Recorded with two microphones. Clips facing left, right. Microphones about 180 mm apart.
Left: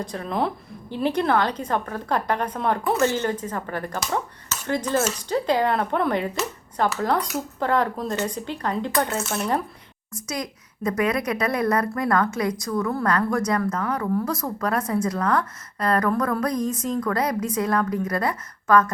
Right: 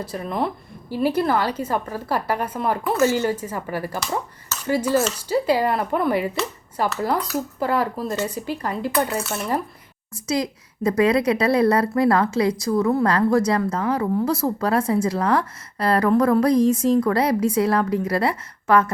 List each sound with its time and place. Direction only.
0.0 s a woman's voice: 5° right (ahead or behind)
10.2 s a woman's voice: 30° right (ahead or behind)